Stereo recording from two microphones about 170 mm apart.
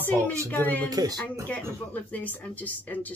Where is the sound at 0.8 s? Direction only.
20° right (ahead or behind).